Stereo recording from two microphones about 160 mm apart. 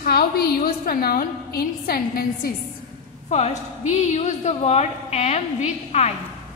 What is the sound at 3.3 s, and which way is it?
A woman's voice, 45° left (ahead or behind).